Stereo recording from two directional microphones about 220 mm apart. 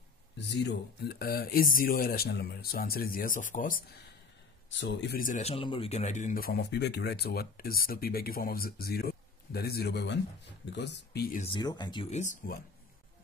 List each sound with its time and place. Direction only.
0.5 s speech: 50° left (ahead or behind)
4.6 s speech: 55° left (ahead or behind)
11.3 s speech: 25° left (ahead or behind)